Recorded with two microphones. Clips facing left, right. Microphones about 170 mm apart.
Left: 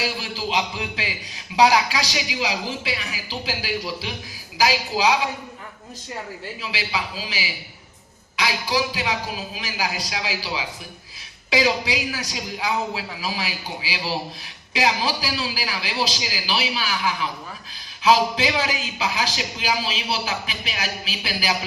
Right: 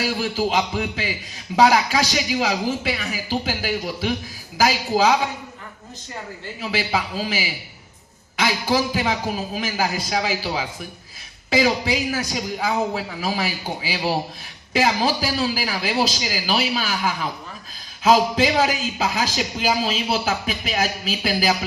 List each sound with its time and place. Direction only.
0.2 s speech: 50° right (ahead or behind)
6.6 s speech: 50° right (ahead or behind)